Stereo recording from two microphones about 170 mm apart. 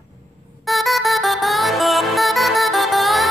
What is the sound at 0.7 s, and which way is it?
Music, centre (ahead or behind).